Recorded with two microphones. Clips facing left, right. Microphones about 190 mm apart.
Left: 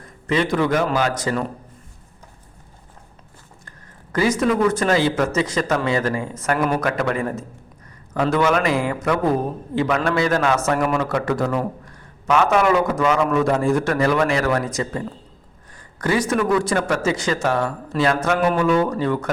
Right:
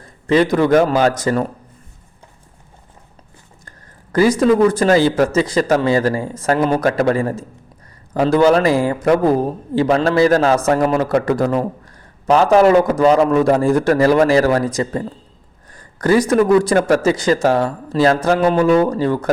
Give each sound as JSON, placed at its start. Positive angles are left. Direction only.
{"t": 0.3, "sound": "speech", "side_deg": -40}
{"t": 0.9, "sound": "a man's voice", "side_deg": -45}
{"t": 4.1, "sound": "speech", "side_deg": -35}